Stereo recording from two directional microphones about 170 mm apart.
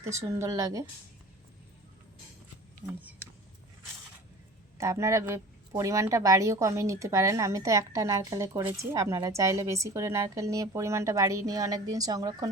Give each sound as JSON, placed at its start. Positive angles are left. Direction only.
{"t": 0.0, "sound": "a woman's voice", "side_deg": -15}
{"t": 4.8, "sound": "a woman's voice", "side_deg": -20}